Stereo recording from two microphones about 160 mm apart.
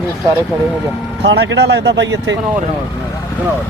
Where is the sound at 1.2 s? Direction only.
90° right.